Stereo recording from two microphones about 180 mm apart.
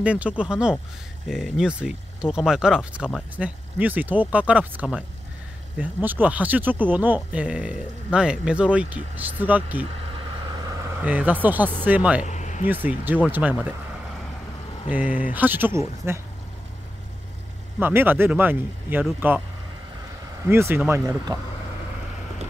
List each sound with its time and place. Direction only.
0.0 s speech: 5° right (ahead or behind)
9.8 s vehicle: 30° right (ahead or behind); by 11.7 s 10° right (ahead or behind)
11.8 s speech: 10° right (ahead or behind)
12.2 s a sound: 40° left (ahead or behind)
12.6 s speech: 10° right (ahead or behind)
14.9 s speech: 10° right (ahead or behind)
17.7 s speech: 10° right (ahead or behind)
20.4 s speech: 15° right (ahead or behind)